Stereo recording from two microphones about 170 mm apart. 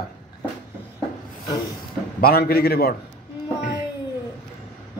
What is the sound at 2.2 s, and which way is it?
Speech, 65° left (ahead or behind).